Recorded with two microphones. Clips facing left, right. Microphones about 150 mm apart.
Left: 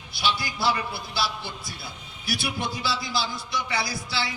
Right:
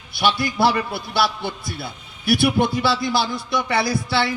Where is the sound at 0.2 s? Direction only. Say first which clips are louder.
Right 9 dB; 60° right (ahead or behind).